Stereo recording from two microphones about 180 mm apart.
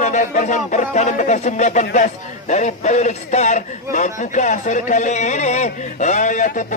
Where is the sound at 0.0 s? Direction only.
45° left (ahead or behind).